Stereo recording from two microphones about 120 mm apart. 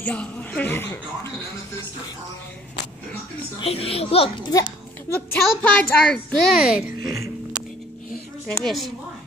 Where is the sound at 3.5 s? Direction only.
55° left (ahead or behind).